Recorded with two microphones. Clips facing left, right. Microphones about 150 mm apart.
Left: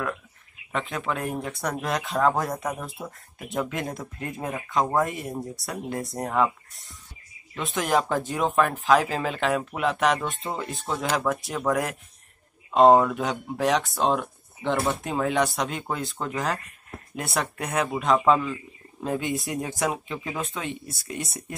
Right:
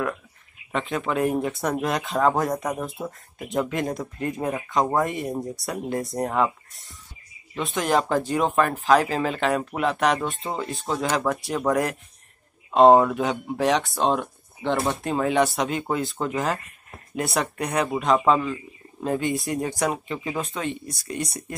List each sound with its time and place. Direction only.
0.7 s speech: centre (ahead or behind)
2.7 s speech: 15° right (ahead or behind)
3.0 s speech: centre (ahead or behind)